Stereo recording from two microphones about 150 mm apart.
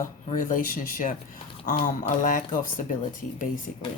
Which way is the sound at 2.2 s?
65° left (ahead or behind).